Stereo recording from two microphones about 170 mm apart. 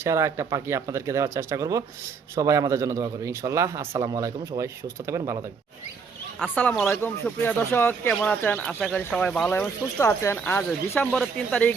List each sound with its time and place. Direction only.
0.0 s a man's voice: 15° right (ahead or behind)
6.4 s speech: 10° left (ahead or behind)